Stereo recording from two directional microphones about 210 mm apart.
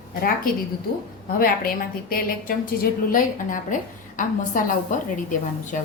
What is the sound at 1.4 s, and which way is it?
A woman's voice, 45° left (ahead or behind).